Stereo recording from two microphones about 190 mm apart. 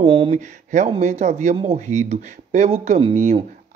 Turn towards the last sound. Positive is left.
turn(degrees=-30)  # may be behind; listen again after turning